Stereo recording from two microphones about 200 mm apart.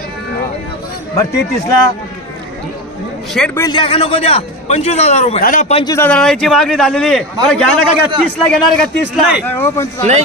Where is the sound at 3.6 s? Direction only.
25° left (ahead or behind).